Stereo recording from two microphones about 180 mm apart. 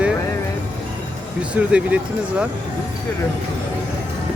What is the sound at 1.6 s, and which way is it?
Speech, 10° right (ahead or behind).